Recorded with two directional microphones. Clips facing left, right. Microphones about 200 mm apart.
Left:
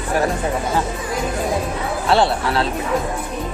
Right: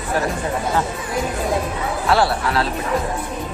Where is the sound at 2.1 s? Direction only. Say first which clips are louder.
Left 1 dB; 25° left (ahead or behind).